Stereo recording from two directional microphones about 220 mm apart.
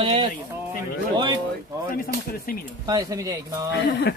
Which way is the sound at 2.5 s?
40° left (ahead or behind).